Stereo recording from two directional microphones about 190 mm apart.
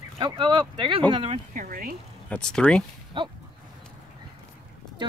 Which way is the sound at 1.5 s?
45° right (ahead or behind).